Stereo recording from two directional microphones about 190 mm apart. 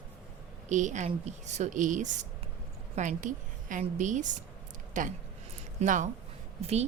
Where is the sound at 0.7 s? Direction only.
40° right (ahead or behind).